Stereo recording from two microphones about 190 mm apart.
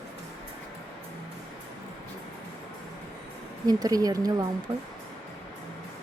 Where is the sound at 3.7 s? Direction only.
20° right (ahead or behind).